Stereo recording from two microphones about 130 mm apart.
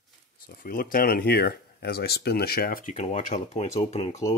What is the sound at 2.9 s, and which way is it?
Speech, 55° left (ahead or behind).